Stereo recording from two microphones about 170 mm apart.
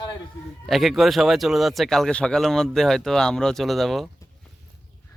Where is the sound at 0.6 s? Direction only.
Centre (ahead or behind).